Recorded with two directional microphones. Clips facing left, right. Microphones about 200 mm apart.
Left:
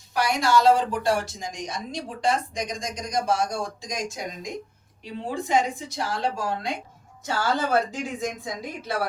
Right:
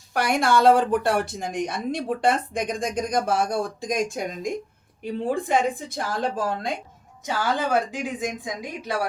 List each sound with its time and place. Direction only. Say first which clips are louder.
0.1 s a woman's voice: right 1 dB; 55° right (ahead or behind)
7.3 s a woman's voice: even; 15° right (ahead or behind)